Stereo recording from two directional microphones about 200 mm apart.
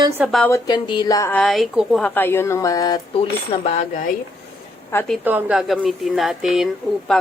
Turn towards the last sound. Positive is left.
turn(degrees=0)  # may be behind; listen again after turning